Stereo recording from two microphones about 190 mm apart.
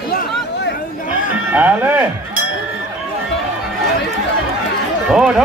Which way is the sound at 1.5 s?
10° right (ahead or behind).